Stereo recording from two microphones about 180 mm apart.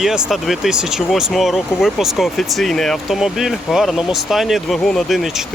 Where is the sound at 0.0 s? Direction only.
Centre (ahead or behind).